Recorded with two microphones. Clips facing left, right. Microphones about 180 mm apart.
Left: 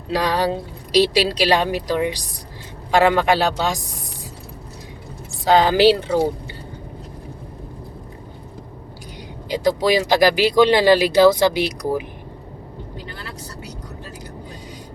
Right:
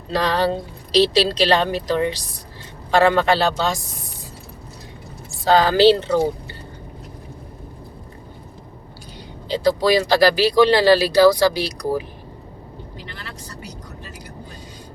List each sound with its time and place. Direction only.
0.1 s a woman's voice: 10° left (ahead or behind)
5.5 s a woman's voice: 15° left (ahead or behind)
9.5 s speech: 20° left (ahead or behind)